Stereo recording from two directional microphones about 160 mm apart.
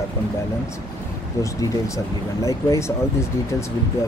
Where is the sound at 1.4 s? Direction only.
20° left (ahead or behind).